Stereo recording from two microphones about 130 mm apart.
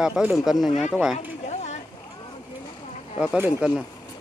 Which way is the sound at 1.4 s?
60° left (ahead or behind).